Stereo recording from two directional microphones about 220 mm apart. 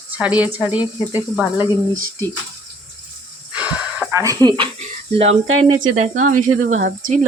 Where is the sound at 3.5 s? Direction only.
5° right (ahead or behind).